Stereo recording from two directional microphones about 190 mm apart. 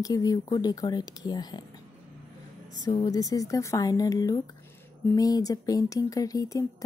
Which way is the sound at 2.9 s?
20° left (ahead or behind).